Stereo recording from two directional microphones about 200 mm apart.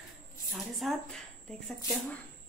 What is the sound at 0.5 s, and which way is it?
A woman's voice, centre (ahead or behind).